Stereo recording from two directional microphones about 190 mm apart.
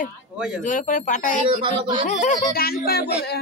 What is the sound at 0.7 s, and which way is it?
Speech, 40° left (ahead or behind).